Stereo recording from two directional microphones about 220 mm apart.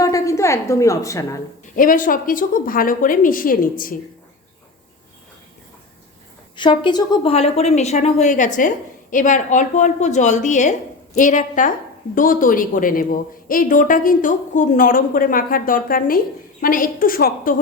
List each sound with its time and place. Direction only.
0.0 s a woman's voice: 15° left (ahead or behind)
1.7 s a woman's voice: 40° left (ahead or behind)
6.6 s a woman's voice: 20° left (ahead or behind); by 17.5 s 40° left (ahead or behind)